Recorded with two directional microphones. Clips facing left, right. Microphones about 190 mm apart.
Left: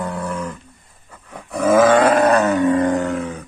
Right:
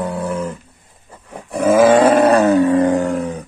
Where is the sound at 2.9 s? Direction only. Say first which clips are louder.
Right 3 dB; 35° right (ahead or behind).